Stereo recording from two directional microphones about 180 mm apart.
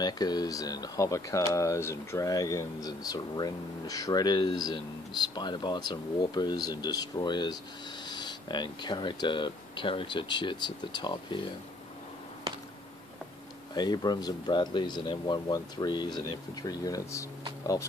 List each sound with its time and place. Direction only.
0.0 s speech: 20° left (ahead or behind)
13.7 s speech: 20° left (ahead or behind)